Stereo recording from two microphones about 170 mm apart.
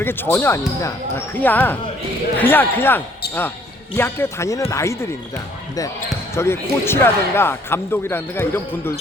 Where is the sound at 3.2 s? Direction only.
70° left (ahead or behind).